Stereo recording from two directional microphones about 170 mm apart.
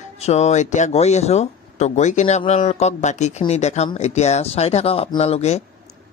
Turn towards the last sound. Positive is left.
turn(degrees=40)  # may be behind; listen again after turning